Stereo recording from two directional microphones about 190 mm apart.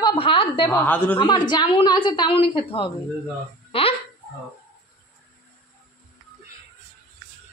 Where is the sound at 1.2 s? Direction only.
25° left (ahead or behind).